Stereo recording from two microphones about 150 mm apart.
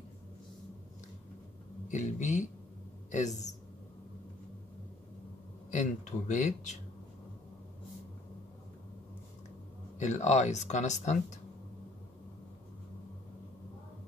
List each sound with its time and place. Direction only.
1.9 s speech: 55° left (ahead or behind)
5.7 s speech: 50° left (ahead or behind)
9.9 s speech: 50° left (ahead or behind)